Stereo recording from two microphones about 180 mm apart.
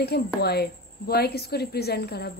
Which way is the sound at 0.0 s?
65° left (ahead or behind).